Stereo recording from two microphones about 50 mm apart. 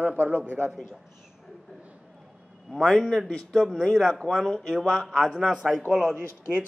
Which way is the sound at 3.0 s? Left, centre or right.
Centre.